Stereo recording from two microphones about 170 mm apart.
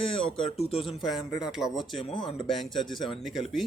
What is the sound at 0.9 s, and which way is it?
Speech, centre (ahead or behind).